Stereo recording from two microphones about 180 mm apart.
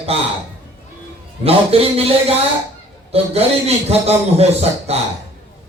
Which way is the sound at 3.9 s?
35° right (ahead or behind).